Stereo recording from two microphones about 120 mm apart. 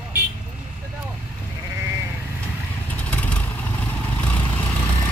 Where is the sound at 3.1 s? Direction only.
10° left (ahead or behind).